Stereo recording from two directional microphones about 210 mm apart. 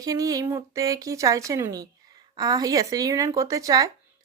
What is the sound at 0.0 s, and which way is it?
A woman's voice, 15° right (ahead or behind).